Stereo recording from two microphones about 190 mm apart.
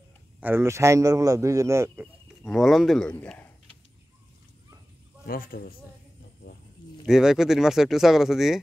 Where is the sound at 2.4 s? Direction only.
Centre (ahead or behind).